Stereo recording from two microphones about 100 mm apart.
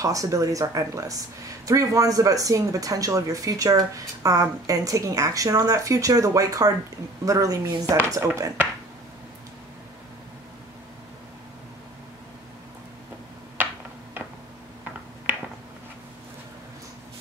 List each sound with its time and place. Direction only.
0.0 s speech: 35° right (ahead or behind)